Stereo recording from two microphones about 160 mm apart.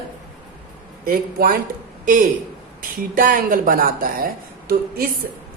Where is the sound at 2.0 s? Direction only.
55° right (ahead or behind).